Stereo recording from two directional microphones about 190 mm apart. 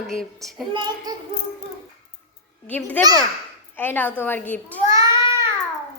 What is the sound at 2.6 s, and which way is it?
A child's voice, 10° left (ahead or behind).